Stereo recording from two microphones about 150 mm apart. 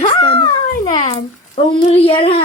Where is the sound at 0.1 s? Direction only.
30° left (ahead or behind).